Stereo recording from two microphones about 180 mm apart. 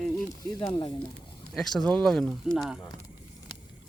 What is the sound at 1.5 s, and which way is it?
Speech, centre (ahead or behind).